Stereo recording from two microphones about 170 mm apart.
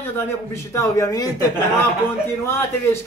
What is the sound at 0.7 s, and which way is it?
Speech, 20° left (ahead or behind).